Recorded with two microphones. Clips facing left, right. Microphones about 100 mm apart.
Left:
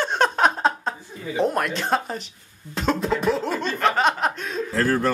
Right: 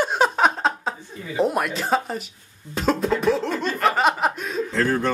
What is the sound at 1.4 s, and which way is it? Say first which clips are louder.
Speech: right 1 dB; 5° right (ahead or behind).